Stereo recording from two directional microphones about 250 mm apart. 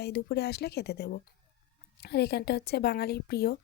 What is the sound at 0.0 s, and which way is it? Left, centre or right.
Speech, left.